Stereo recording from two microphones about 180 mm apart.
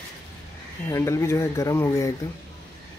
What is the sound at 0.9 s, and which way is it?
Speech, 15° left (ahead or behind).